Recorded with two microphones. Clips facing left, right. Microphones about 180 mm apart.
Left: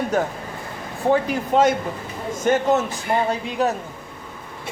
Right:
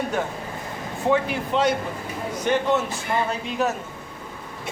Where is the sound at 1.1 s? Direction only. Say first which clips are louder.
Left 4 dB; 45° left (ahead or behind).